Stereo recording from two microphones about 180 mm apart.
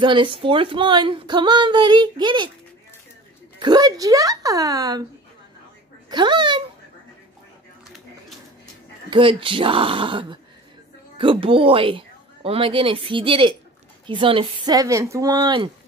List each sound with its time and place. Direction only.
0.0 s a woman's voice: 25° right (ahead or behind)
3.5 s a woman's voice: 25° right (ahead or behind)
6.0 s a woman's voice: 25° right (ahead or behind)
9.1 s a woman's voice: 30° right (ahead or behind)